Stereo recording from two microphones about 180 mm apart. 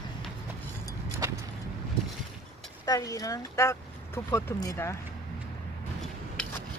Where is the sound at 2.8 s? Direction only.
20° left (ahead or behind).